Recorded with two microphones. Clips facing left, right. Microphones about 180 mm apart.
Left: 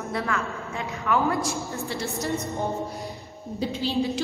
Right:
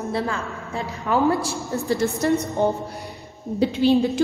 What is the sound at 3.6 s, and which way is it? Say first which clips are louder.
Speech: right 10 dB; 60° right (ahead or behind).